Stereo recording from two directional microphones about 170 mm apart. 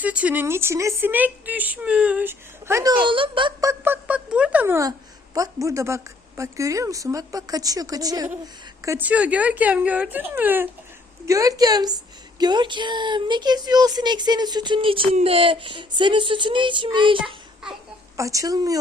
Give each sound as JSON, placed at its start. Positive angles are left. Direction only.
{"t": 0.0, "sound": "speech", "side_deg": -10}
{"t": 3.0, "sound": "speech", "side_deg": -30}
{"t": 18.2, "sound": "speech", "side_deg": -20}